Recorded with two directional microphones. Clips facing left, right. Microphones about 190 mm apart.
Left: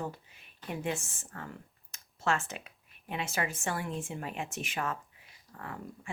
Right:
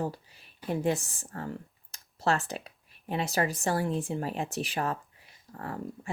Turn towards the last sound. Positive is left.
turn(degrees=-40)  # may be behind; listen again after turning